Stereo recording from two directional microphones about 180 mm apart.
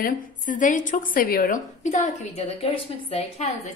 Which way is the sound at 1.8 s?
40° left (ahead or behind).